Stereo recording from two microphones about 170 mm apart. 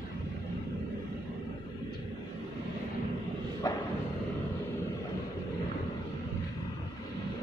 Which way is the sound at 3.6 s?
20° left (ahead or behind).